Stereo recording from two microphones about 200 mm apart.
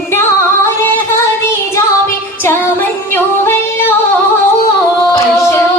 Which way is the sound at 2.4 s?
10° left (ahead or behind).